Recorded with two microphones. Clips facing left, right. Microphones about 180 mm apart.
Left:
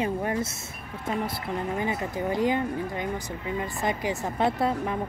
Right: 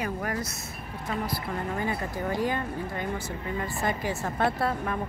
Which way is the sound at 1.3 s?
20° left (ahead or behind).